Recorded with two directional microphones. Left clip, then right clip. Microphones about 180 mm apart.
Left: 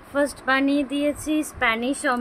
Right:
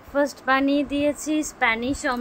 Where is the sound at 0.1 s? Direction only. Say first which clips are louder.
Even; centre (ahead or behind).